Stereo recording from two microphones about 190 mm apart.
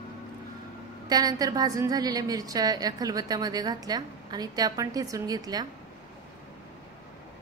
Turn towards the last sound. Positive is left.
turn(degrees=-20)  # may be behind; listen again after turning